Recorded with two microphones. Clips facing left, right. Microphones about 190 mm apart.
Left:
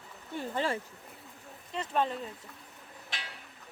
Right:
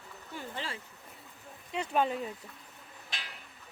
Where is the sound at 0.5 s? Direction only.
50° left (ahead or behind).